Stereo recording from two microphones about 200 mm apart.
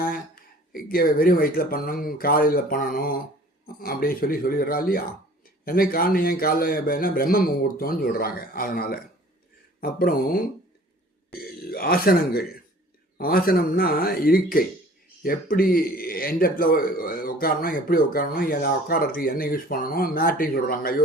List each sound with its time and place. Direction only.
0.7 s a man's voice: 45° left (ahead or behind)